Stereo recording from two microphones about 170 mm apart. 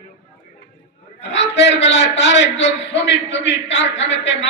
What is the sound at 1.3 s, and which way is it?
A man's voice, 90° left.